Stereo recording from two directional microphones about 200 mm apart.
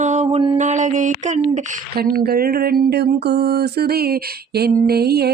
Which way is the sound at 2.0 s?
50° right (ahead or behind).